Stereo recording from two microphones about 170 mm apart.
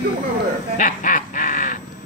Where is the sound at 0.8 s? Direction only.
50° left (ahead or behind).